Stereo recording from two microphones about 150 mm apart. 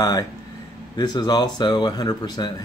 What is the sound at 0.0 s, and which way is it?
Speech, 25° left (ahead or behind).